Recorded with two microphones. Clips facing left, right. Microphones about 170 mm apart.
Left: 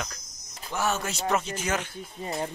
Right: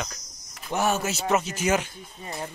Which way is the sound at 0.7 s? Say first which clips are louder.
Right 3 dB; 15° right (ahead or behind).